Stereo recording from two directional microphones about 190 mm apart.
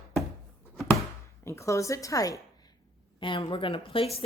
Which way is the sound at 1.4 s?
15° left (ahead or behind).